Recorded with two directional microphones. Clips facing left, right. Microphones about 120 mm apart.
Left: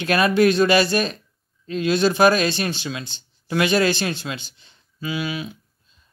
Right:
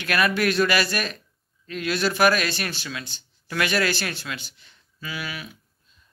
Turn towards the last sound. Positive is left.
turn(degrees=20)  # may be behind; listen again after turning